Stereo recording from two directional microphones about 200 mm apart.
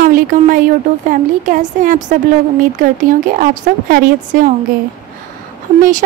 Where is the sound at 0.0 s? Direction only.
45° right (ahead or behind).